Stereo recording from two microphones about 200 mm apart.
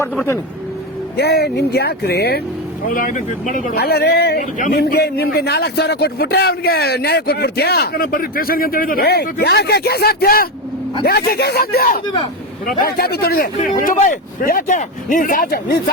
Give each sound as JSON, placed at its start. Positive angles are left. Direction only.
{"t": 1.1, "sound": "speech", "side_deg": 55}
{"t": 2.9, "sound": "speech", "side_deg": 40}